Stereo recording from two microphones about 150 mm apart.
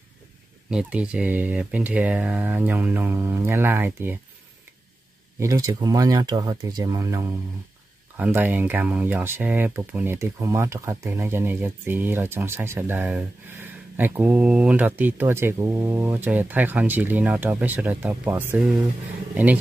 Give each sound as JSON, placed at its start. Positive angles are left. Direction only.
{"t": 0.7, "sound": "speech", "side_deg": -5}
{"t": 5.4, "sound": "speech", "side_deg": -20}